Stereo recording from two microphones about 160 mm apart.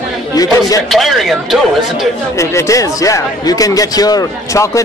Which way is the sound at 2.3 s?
20° left (ahead or behind).